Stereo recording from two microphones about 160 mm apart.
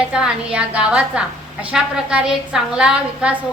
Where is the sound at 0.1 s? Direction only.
5° right (ahead or behind).